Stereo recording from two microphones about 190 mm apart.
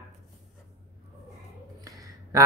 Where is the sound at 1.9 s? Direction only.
20° right (ahead or behind).